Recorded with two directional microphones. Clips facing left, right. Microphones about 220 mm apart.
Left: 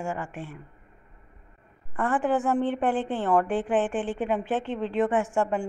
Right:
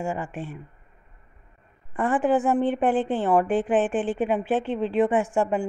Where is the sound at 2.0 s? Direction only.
15° right (ahead or behind).